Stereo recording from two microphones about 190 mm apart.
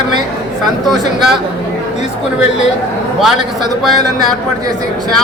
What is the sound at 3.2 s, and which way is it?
Speech, centre (ahead or behind).